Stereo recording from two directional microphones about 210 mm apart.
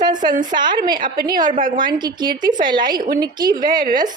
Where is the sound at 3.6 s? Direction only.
40° right (ahead or behind).